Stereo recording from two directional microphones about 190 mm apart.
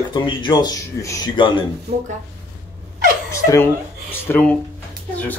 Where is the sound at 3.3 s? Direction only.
15° left (ahead or behind).